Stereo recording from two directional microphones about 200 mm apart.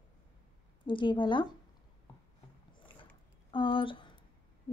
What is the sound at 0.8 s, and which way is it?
Speech, 25° left (ahead or behind).